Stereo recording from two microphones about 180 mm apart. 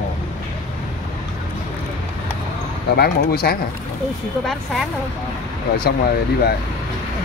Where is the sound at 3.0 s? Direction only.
60° left (ahead or behind).